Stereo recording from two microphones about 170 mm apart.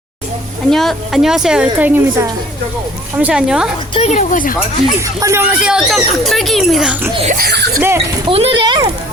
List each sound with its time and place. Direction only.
0.7 s a woman's voice: centre (ahead or behind)
3.9 s speech: 40° left (ahead or behind)
4.9 s speech: 15° right (ahead or behind)
5.6 s a woman's voice: 5° right (ahead or behind)
7.3 s speech: 60° right (ahead or behind)
7.8 s speech: 15° right (ahead or behind)
8.3 s speech: 35° right (ahead or behind)